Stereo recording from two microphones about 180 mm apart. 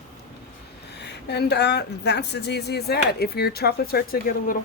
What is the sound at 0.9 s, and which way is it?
Speech, 70° left (ahead or behind).